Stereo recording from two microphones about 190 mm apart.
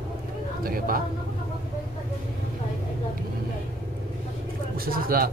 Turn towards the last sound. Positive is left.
turn(degrees=-50)  # may be behind; listen again after turning